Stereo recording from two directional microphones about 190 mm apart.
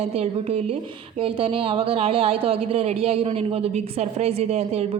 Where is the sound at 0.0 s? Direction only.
30° right (ahead or behind).